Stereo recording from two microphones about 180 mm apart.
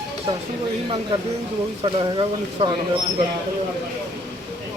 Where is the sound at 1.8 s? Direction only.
25° right (ahead or behind).